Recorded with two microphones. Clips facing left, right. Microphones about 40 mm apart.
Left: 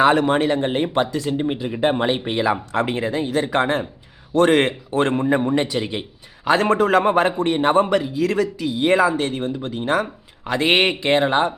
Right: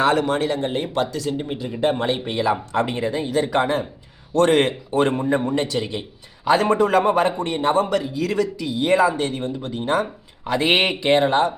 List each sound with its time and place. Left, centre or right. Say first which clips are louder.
0.0 s speech: left 3 dB; centre
2.8 s speech: left 1 dB; left
3.6 s speech: left 1 dB; left
4.4 s speech: left 1 dB; centre
5.9 s a man's voice: left 1 dB; left
7.0 s speech: left 1 dB; left
11.3 s speech: even; centre